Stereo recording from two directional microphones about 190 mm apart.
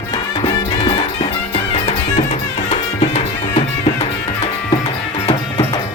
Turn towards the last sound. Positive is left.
turn(degrees=25)  # may be behind; listen again after turning